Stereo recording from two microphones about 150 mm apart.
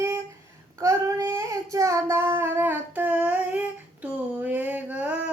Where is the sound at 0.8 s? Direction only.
20° right (ahead or behind).